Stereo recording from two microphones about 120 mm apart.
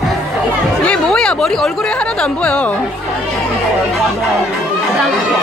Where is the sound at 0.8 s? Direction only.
5° left (ahead or behind).